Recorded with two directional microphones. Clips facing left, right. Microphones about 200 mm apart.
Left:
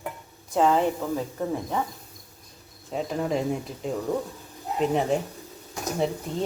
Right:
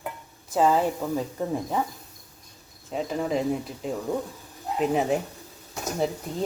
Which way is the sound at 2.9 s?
Centre (ahead or behind).